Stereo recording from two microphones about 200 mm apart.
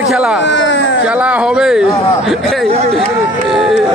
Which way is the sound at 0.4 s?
65° left (ahead or behind).